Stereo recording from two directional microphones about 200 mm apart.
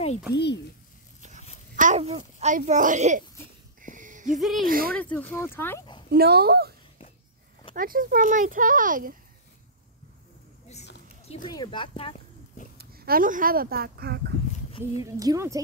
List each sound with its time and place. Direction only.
0.3 s a child's voice: 60° left (ahead or behind)
1.8 s speech: 35° right (ahead or behind)
3.8 s a sound: 40° right (ahead or behind)
4.4 s speech: centre (ahead or behind)
4.6 s a child's voice: 45° right (ahead or behind)
4.9 s speech: 10° left (ahead or behind)
6.1 s a child's voice: 50° right (ahead or behind)
7.7 s a child's voice: 45° right (ahead or behind)
11.4 s speech: 25° left (ahead or behind)
12.7 s speech: 50° right (ahead or behind)
15.0 s speech: 15° right (ahead or behind)